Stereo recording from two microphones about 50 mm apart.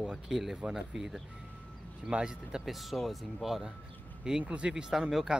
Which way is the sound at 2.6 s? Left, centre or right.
Centre.